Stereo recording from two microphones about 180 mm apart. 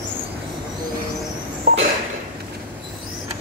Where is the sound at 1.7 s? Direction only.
55° right (ahead or behind).